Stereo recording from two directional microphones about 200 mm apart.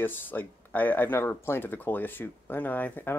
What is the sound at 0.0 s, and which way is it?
Speech, 10° left (ahead or behind).